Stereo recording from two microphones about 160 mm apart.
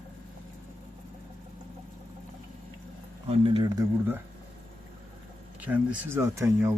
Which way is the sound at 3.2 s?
35° right (ahead or behind).